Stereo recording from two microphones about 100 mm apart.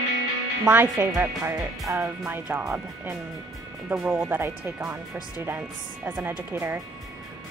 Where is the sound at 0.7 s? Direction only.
20° right (ahead or behind).